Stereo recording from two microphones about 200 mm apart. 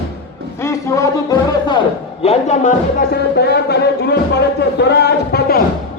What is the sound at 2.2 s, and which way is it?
Speech, 35° left (ahead or behind).